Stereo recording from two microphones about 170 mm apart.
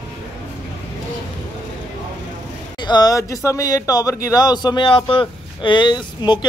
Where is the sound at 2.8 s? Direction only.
25° left (ahead or behind).